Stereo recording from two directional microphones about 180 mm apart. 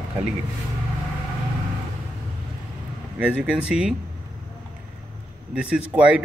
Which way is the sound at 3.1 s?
5° right (ahead or behind).